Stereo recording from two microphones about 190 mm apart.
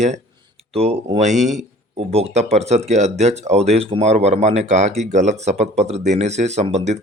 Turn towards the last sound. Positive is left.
turn(degrees=-35)  # may be behind; listen again after turning